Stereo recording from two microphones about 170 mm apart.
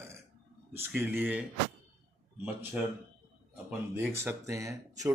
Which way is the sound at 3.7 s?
15° right (ahead or behind).